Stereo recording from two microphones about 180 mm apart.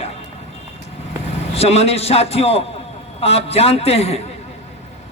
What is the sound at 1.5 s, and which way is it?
Speech, 35° left (ahead or behind).